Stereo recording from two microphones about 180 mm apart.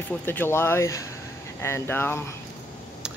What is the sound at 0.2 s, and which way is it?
Speech, 10° left (ahead or behind).